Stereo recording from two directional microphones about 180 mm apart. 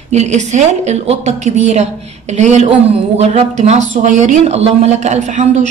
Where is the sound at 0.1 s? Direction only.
40° right (ahead or behind).